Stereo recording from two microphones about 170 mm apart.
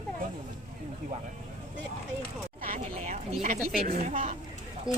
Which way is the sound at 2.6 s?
35° right (ahead or behind).